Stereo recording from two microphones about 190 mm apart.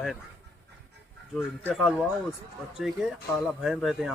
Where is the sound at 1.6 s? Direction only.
Centre (ahead or behind).